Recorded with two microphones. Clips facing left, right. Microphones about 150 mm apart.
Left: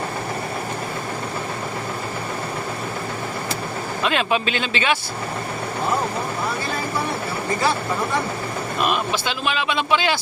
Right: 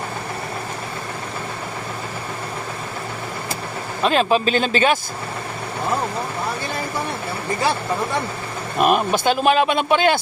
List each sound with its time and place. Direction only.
4.0 s speech: 35° right (ahead or behind)
8.8 s speech: 45° right (ahead or behind)